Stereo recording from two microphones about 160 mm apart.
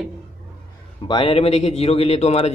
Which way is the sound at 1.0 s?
35° left (ahead or behind).